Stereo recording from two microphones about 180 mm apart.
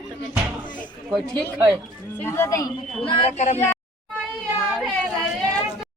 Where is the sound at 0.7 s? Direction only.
5° left (ahead or behind).